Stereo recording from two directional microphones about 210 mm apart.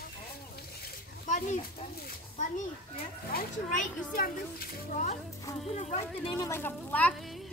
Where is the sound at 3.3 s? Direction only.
45° left (ahead or behind); by 6.0 s 30° left (ahead or behind).